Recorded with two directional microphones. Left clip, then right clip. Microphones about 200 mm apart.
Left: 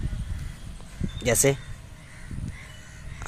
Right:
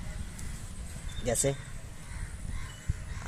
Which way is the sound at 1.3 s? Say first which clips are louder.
Left 8 dB; 35° left (ahead or behind).